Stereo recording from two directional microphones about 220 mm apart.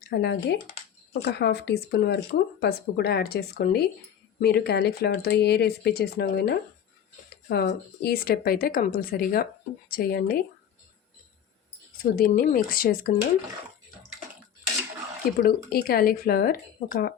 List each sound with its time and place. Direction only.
0.1 s speech: 50° left (ahead or behind)
12.1 s speech: 40° left (ahead or behind)
15.4 s speech: 45° left (ahead or behind)